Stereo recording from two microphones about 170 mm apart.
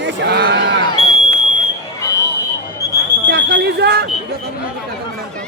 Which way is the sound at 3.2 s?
85° right.